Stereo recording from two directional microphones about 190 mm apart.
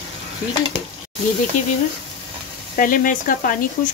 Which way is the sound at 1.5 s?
40° left (ahead or behind).